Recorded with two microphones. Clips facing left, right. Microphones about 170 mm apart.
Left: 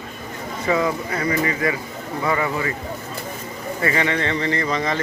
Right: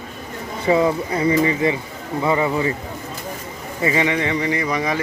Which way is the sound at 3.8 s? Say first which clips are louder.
Right 2 dB; 15° right (ahead or behind).